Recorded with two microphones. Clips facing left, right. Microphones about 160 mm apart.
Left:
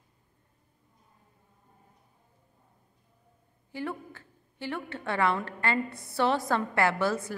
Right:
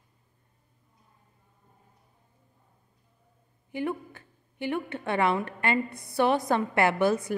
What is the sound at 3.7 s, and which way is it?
A woman's voice, 15° right (ahead or behind).